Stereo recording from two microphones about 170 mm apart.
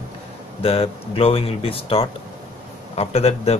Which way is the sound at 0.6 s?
35° left (ahead or behind).